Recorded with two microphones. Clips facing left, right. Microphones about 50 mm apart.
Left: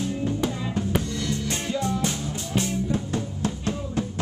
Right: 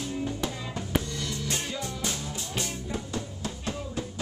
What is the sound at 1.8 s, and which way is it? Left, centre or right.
Music, centre.